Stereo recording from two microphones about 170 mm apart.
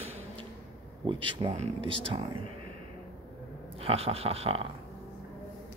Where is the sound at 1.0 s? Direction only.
30° right (ahead or behind).